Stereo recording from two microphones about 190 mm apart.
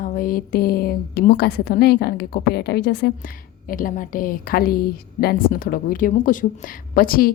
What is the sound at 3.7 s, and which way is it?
A woman's voice, 45° left (ahead or behind).